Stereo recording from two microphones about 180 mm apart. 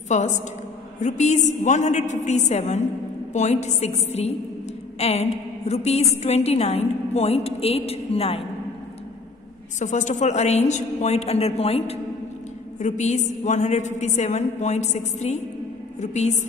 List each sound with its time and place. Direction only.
0.1 s a woman's voice: 40° left (ahead or behind)
9.8 s a woman's voice: 40° left (ahead or behind)